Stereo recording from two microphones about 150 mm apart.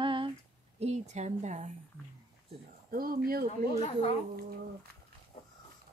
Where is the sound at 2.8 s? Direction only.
75° right (ahead or behind).